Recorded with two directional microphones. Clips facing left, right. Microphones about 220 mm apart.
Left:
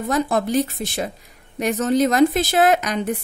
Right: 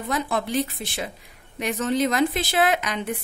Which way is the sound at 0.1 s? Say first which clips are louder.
Left 5 dB; 45° left (ahead or behind).